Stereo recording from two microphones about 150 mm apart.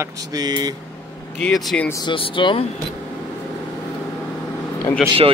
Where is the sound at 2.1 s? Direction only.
35° left (ahead or behind).